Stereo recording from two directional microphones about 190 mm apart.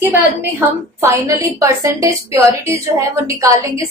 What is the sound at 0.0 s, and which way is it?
A woman's voice, 10° right (ahead or behind).